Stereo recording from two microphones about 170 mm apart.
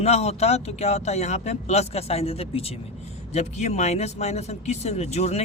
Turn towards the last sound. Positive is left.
turn(degrees=40)  # may be behind; listen again after turning